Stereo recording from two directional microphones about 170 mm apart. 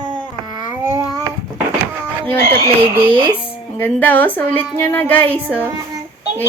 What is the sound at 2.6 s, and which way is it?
Speech, 30° right (ahead or behind).